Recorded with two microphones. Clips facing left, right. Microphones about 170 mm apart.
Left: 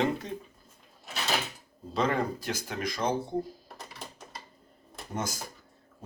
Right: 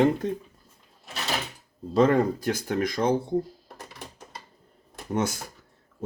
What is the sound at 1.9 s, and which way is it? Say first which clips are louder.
Speech: right 8 dB; 45° right (ahead or behind).